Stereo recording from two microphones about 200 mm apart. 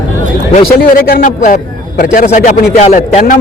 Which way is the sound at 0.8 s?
50° left (ahead or behind).